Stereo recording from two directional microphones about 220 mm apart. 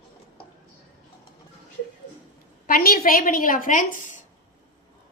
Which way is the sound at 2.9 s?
40° left (ahead or behind).